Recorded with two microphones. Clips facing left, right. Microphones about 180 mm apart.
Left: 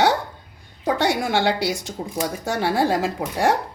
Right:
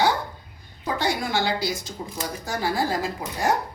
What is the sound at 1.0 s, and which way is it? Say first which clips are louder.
Speech: left 4 dB; 75° left (ahead or behind).